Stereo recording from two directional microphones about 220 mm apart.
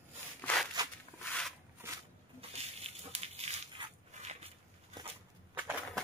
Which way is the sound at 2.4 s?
30° right (ahead or behind).